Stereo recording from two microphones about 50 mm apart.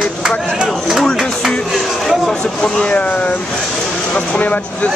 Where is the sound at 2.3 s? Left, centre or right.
Centre.